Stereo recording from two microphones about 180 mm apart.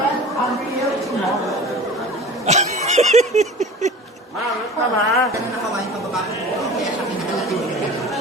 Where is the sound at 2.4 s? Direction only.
40° right (ahead or behind).